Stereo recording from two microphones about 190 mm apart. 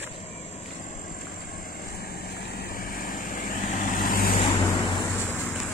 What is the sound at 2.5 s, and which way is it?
Vehicle, 50° left (ahead or behind).